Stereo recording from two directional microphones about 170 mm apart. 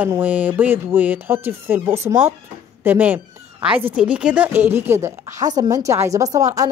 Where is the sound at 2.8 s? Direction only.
10° right (ahead or behind).